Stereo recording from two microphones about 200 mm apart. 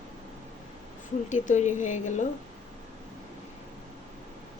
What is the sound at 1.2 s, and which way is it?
A woman's voice, 40° left (ahead or behind).